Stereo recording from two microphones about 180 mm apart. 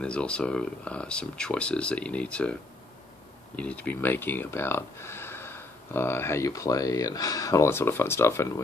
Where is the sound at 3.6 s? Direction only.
10° left (ahead or behind).